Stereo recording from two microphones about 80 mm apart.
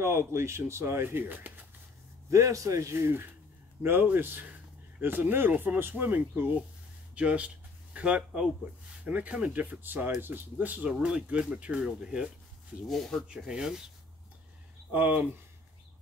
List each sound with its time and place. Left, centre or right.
0.0 s speech: right
2.2 s speech: right
7.2 s a sound: centre
9.0 s speech: centre
10.9 s speech: centre
12.8 s speech: centre
13.3 s speech: centre
14.9 s speech: centre